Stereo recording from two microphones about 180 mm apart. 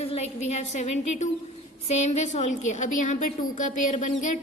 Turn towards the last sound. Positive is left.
turn(degrees=45)  # may be behind; listen again after turning